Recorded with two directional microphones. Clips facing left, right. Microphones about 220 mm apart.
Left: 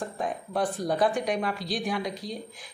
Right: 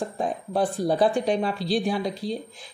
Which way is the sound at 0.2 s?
30° right (ahead or behind).